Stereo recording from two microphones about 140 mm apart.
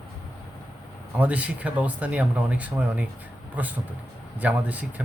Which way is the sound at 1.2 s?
10° right (ahead or behind).